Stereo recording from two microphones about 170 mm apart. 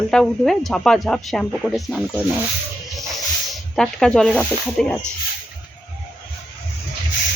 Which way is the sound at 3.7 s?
5° left (ahead or behind).